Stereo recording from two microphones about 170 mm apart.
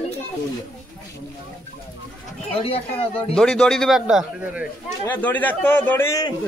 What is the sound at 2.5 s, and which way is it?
Speech, 35° left (ahead or behind).